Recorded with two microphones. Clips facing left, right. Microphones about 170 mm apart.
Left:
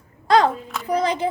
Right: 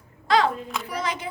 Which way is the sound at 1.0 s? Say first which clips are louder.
Left 8 dB; 30° left (ahead or behind).